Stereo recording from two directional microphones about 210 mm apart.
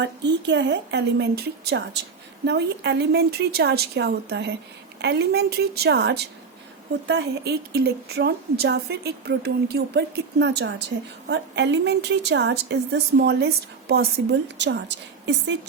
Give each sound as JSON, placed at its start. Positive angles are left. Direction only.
{"t": 0.0, "sound": "a woman's voice", "side_deg": -55}